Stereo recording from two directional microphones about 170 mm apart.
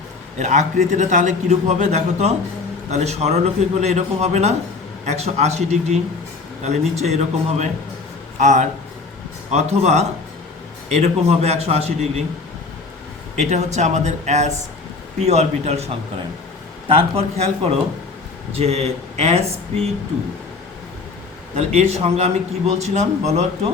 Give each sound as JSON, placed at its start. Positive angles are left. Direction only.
{"t": 0.3, "sound": "a man's voice", "side_deg": -45}
{"t": 8.4, "sound": "a man's voice", "side_deg": -45}
{"t": 13.4, "sound": "a man's voice", "side_deg": -40}
{"t": 16.9, "sound": "speech", "side_deg": -35}
{"t": 21.5, "sound": "speech", "side_deg": -40}